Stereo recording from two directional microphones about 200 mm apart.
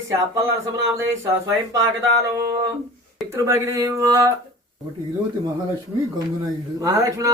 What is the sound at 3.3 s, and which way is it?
Speech, 15° right (ahead or behind).